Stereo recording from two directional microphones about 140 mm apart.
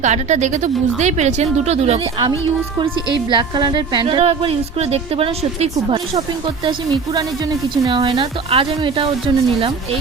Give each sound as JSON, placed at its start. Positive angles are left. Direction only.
{"t": 0.0, "sound": "speech", "side_deg": -55}
{"t": 2.7, "sound": "a woman's voice", "side_deg": -35}
{"t": 6.7, "sound": "a woman's voice", "side_deg": -30}